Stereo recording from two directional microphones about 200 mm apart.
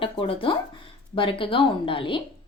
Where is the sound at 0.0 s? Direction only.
25° left (ahead or behind).